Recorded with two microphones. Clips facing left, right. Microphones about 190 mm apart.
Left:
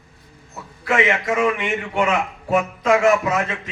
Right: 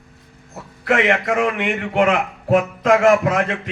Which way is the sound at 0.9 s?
55° right (ahead or behind).